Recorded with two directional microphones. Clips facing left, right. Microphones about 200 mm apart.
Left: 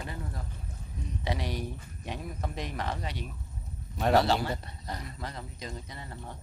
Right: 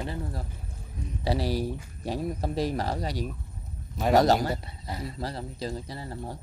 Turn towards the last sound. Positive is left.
turn(degrees=-35)  # may be behind; listen again after turning